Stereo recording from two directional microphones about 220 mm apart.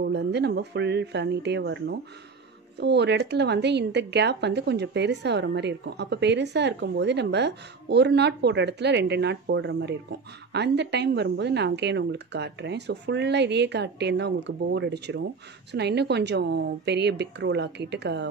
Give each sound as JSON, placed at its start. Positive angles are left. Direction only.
{"t": 0.0, "sound": "speech", "side_deg": -50}